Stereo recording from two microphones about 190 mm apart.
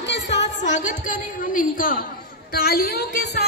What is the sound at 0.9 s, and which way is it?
A woman's voice, 45° left (ahead or behind).